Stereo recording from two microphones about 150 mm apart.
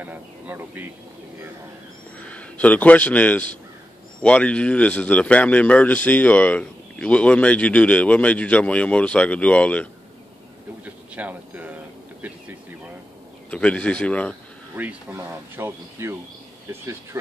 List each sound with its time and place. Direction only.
0.0 s speech: 10° right (ahead or behind)
2.2 s a man's voice: 10° left (ahead or behind)
11.1 s a sound: 10° right (ahead or behind)
13.5 s speech: 10° left (ahead or behind)
14.8 s speech: 10° right (ahead or behind)